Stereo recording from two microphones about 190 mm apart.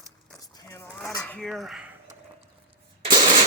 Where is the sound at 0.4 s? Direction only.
15° left (ahead or behind).